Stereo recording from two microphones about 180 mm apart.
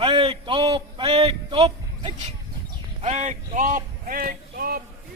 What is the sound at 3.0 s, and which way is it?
Speech, 40° right (ahead or behind).